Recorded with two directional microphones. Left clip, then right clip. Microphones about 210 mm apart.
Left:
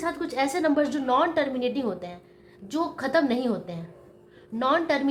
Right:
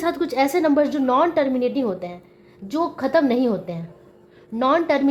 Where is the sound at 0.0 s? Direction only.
30° right (ahead or behind).